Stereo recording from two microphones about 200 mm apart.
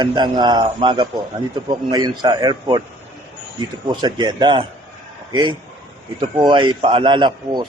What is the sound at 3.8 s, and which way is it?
A man's voice, 20° right (ahead or behind).